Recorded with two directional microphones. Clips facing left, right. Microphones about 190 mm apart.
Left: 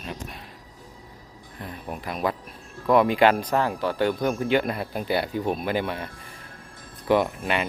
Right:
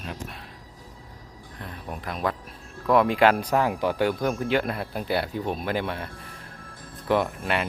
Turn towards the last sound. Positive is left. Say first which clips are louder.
# left 2 dB
turn(degrees=0)  # may be behind; listen again after turning